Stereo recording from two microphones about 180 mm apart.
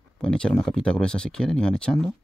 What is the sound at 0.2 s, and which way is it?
Speech, 5° left (ahead or behind).